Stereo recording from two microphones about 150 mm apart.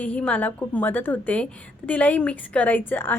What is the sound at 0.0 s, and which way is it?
A woman's voice, 10° left (ahead or behind).